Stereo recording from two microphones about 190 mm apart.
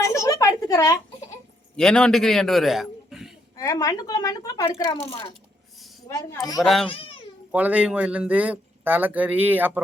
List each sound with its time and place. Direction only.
0.0 s a sound: 15° left (ahead or behind)
1.7 s a man's voice: 5° left (ahead or behind)
3.6 s a woman's voice: 20° left (ahead or behind)
6.1 s speech: 15° left (ahead or behind)
7.5 s speech: 5° right (ahead or behind)